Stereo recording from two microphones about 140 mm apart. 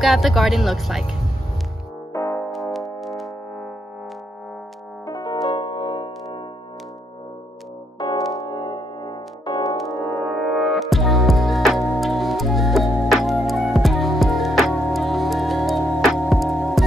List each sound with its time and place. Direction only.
0.0 s speech: centre (ahead or behind)
2.1 s music: 25° left (ahead or behind)
2.5 s music: centre (ahead or behind)
5.0 s music: 30° left (ahead or behind)
8.5 s music: 30° left (ahead or behind)
10.1 s music: centre (ahead or behind)